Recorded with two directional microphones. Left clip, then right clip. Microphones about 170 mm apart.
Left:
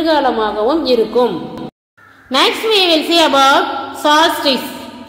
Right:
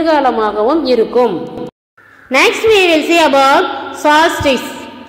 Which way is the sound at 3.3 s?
20° right (ahead or behind).